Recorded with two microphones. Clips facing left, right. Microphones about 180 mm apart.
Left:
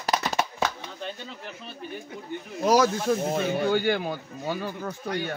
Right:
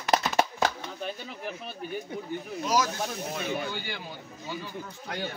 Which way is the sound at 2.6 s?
60° left (ahead or behind).